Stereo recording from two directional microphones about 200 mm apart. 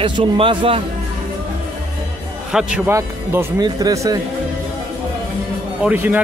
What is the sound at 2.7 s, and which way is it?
Speech, 10° right (ahead or behind).